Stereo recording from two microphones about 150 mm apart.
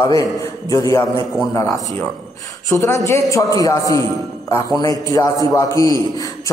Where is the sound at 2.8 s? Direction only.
15° left (ahead or behind).